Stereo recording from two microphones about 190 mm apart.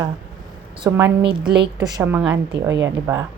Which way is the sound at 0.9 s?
15° right (ahead or behind).